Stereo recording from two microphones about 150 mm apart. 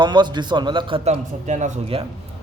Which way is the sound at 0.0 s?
30° right (ahead or behind).